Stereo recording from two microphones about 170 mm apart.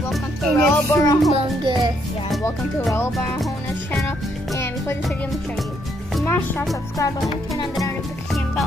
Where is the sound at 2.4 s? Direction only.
15° left (ahead or behind).